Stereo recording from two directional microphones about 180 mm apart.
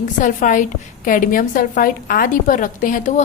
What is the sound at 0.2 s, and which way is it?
A woman's voice, 45° left (ahead or behind).